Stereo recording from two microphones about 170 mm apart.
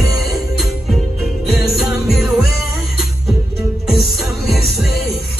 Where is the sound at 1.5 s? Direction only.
Centre (ahead or behind).